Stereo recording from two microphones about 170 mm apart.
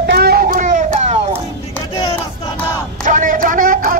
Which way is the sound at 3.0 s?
50° right (ahead or behind).